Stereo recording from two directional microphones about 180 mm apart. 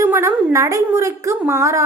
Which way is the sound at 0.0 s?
15° right (ahead or behind).